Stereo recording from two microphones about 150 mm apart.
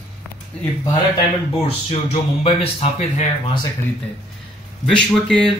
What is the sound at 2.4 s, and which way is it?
Speech, 45° left (ahead or behind).